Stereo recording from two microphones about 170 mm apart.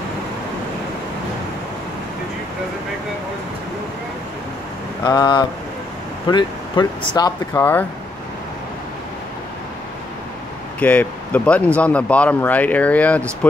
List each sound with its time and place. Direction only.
5.0 s speech: 25° left (ahead or behind)
7.5 s speech: 10° left (ahead or behind)
10.8 s speech: 10° left (ahead or behind)